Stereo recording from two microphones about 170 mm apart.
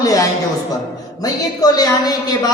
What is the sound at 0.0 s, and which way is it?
A woman's voice, 20° left (ahead or behind).